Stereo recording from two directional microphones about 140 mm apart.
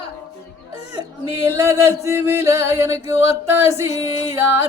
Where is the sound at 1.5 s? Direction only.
20° right (ahead or behind).